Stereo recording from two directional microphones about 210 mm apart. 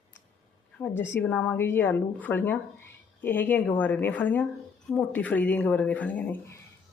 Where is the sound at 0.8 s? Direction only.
10° left (ahead or behind).